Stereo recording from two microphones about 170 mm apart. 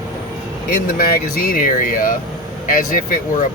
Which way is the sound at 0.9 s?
60° left (ahead or behind).